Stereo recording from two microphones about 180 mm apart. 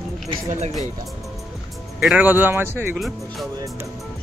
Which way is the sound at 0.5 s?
40° right (ahead or behind).